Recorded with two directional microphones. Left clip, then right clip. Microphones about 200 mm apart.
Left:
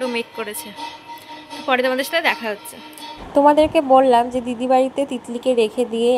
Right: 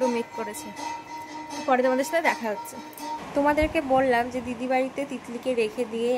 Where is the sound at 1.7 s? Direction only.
5° right (ahead or behind).